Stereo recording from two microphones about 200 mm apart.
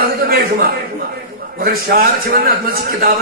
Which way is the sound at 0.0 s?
50° right (ahead or behind).